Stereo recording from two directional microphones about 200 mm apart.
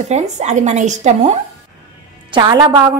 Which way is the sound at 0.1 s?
35° right (ahead or behind).